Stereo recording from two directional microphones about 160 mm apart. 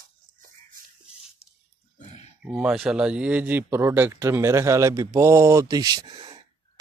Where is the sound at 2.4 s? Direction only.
5° right (ahead or behind).